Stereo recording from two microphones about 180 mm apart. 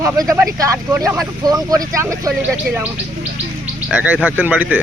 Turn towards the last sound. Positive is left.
turn(degrees=-10)  # may be behind; listen again after turning